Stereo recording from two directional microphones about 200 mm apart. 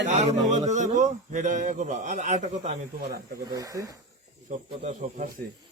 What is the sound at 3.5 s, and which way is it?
Speech, 15° right (ahead or behind).